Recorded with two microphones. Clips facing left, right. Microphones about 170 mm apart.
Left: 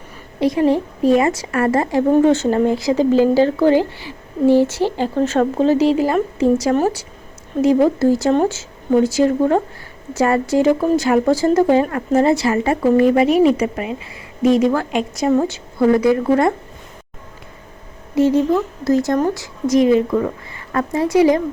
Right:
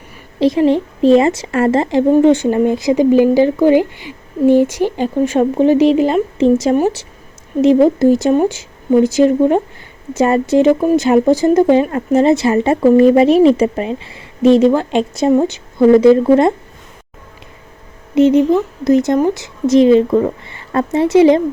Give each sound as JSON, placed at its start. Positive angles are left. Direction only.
{"t": 0.3, "sound": "a woman's voice", "side_deg": -25}
{"t": 18.1, "sound": "a woman's voice", "side_deg": -20}